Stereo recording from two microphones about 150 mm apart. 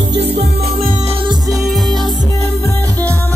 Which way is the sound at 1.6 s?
Centre (ahead or behind).